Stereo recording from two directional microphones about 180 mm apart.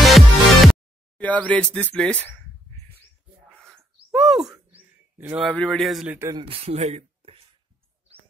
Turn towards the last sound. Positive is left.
turn(degrees=-35)  # may be behind; listen again after turning